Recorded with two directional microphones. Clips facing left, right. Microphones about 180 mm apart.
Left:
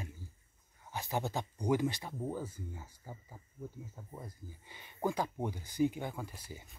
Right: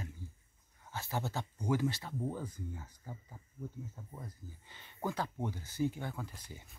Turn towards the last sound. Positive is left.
turn(degrees=10)  # may be behind; listen again after turning